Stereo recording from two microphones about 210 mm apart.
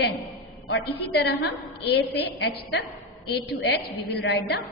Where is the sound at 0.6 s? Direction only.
50° left (ahead or behind).